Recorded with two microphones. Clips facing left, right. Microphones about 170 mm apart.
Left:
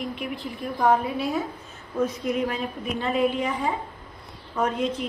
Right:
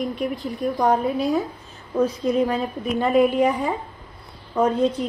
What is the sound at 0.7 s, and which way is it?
A woman's voice, 40° right (ahead or behind).